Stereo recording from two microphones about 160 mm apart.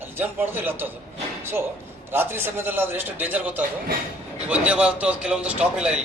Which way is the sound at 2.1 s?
15° right (ahead or behind).